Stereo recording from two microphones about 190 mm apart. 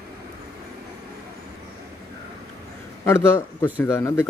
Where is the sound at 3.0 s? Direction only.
15° left (ahead or behind).